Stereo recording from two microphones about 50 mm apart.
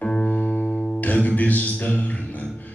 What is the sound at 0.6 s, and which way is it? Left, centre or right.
Music, centre.